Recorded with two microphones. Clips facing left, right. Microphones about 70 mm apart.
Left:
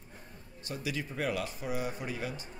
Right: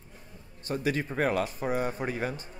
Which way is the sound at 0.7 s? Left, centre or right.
Right.